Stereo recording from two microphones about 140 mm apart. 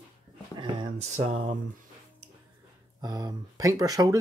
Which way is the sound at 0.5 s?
35° right (ahead or behind).